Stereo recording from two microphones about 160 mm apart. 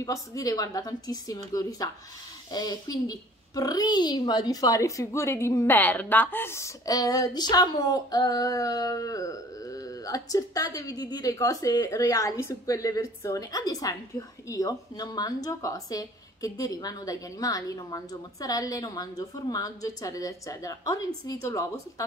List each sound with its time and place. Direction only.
0.0 s a child's voice: 20° left (ahead or behind)